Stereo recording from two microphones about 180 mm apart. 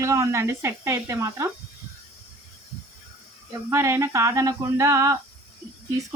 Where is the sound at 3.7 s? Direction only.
15° right (ahead or behind).